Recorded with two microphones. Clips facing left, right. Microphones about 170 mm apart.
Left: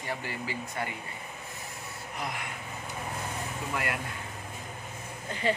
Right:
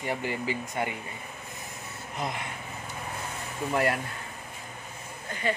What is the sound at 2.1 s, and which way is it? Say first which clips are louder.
Speech: right 4 dB; 25° right (ahead or behind).